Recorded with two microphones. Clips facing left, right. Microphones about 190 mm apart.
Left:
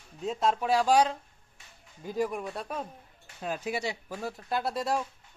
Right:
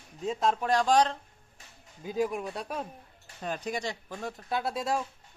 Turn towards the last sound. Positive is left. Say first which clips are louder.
# left 1 dB
turn(degrees=0)  # may be behind; listen again after turning